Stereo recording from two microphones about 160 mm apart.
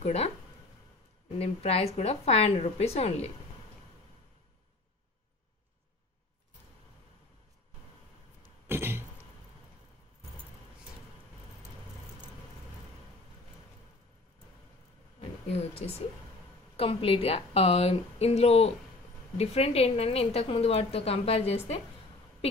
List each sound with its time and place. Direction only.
0.0 s speech: 40° left (ahead or behind)
1.4 s a woman's voice: 40° left (ahead or behind)
8.6 s cough: 15° right (ahead or behind)
15.1 s a sound: 40° left (ahead or behind)
16.7 s a woman's voice: 35° left (ahead or behind)